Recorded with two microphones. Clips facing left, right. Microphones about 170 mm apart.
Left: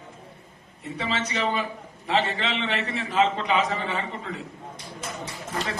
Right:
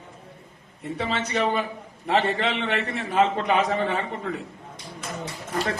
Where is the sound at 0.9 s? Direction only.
55° right (ahead or behind).